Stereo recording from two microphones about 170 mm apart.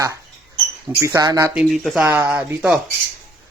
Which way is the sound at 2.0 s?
10° right (ahead or behind).